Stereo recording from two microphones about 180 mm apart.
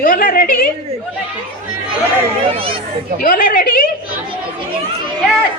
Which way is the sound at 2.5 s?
30° right (ahead or behind).